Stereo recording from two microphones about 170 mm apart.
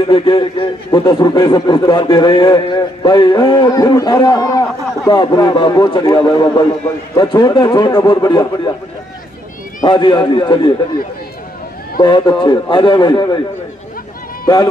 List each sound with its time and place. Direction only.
0.0 s a man's voice: 30° left (ahead or behind)
9.8 s a man's voice: 30° left (ahead or behind)
12.0 s a man's voice: 25° left (ahead or behind)
14.4 s speech: 25° left (ahead or behind)